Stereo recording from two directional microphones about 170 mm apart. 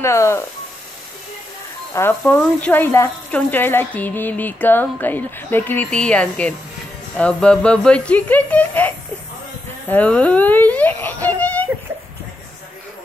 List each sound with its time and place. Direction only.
0.0 s speech: 15° left (ahead or behind)
2.0 s a child's voice: 10° left (ahead or behind)